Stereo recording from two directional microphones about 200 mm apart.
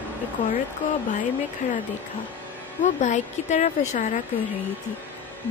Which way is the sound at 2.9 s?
40° left (ahead or behind).